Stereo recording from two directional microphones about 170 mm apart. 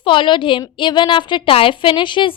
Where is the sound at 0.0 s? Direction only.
30° left (ahead or behind).